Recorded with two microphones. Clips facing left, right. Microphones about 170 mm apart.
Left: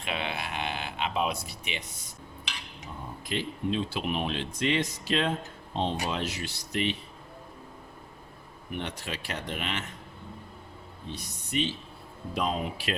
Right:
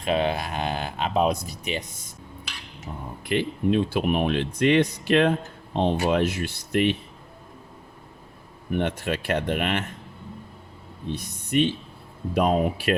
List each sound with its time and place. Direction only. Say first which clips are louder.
0.0 s speech: right 10 dB; 40° right (ahead or behind)
3.2 s speech: right 8 dB; 60° right (ahead or behind)
8.7 s speech: right 10 dB; 55° right (ahead or behind)
11.1 s speech: right 8 dB; 55° right (ahead or behind)